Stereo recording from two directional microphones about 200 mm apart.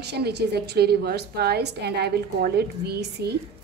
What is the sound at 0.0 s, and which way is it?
A woman's voice, 55° right (ahead or behind).